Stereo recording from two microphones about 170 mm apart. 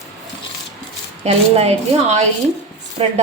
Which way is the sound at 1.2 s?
40° right (ahead or behind).